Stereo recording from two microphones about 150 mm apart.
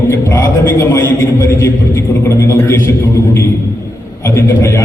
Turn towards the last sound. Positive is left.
turn(degrees=20)  # may be behind; listen again after turning